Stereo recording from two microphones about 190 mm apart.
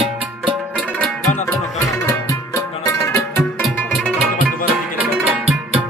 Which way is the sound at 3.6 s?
5° left (ahead or behind).